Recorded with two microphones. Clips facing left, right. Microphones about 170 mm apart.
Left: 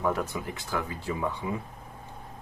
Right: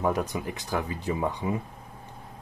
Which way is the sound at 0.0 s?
15° right (ahead or behind).